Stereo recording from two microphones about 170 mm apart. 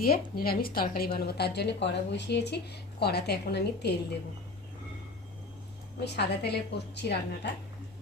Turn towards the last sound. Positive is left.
turn(degrees=85)